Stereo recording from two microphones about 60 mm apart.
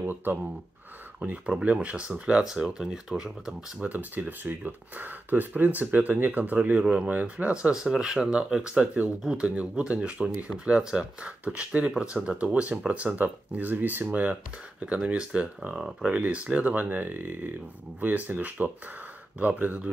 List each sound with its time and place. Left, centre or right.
0.0 s speech: right
1.2 s speech: right; by 3.5 s centre
3.8 s speech: right
7.7 s speech: centre
15.7 s speech: centre
16.1 s speech: right